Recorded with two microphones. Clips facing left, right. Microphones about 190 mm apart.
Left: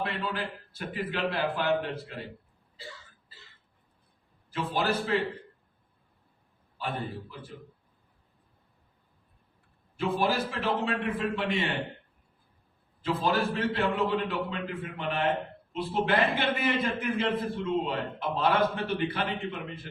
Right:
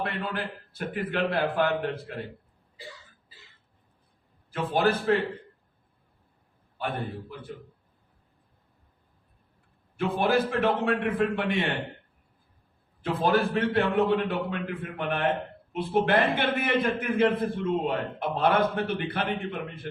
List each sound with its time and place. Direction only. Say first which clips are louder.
0.0 s a man's voice: right 1 dB; 55° right (ahead or behind)
4.5 s a man's voice: right 4 dB; 55° right (ahead or behind)
6.7 s a man's voice: right 2 dB; 55° right (ahead or behind)
10.0 s a man's voice: right 3 dB; 55° right (ahead or behind)
13.0 s a man's voice: right 3 dB; 55° right (ahead or behind)